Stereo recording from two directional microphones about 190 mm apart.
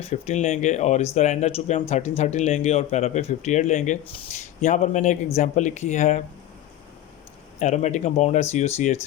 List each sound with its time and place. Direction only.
0.0 s speech: 35° left (ahead or behind)
7.6 s speech: 40° left (ahead or behind)